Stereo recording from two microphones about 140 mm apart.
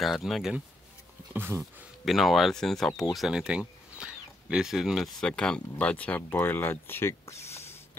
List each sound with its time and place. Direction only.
0.0 s speech: centre (ahead or behind)
1.3 s speech: 15° right (ahead or behind)
2.0 s speech: centre (ahead or behind); by 7.3 s 15° left (ahead or behind)
7.4 s a sound: 20° left (ahead or behind)